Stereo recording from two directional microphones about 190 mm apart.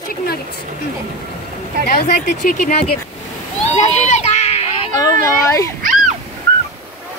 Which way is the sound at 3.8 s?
35° left (ahead or behind).